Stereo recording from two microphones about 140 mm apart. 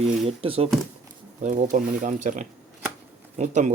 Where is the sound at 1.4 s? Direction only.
60° right (ahead or behind).